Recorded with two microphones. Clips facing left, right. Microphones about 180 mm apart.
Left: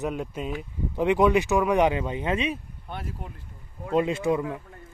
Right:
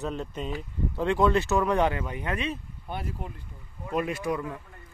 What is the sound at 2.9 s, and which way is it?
Speech, centre (ahead or behind).